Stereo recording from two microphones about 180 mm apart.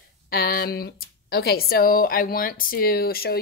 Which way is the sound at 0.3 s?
55° left (ahead or behind).